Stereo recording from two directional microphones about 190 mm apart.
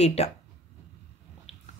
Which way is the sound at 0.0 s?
35° left (ahead or behind).